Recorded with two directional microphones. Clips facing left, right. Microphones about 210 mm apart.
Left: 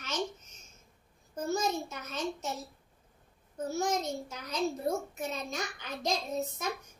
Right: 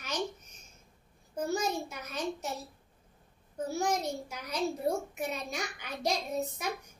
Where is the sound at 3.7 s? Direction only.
15° right (ahead or behind).